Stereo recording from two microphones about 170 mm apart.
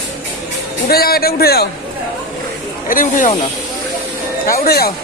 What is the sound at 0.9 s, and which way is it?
Speech, 60° left (ahead or behind).